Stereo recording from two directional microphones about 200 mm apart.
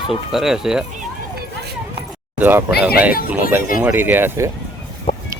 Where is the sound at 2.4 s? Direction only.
10° right (ahead or behind).